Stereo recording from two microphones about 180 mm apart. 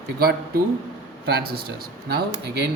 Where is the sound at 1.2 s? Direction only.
60° right (ahead or behind).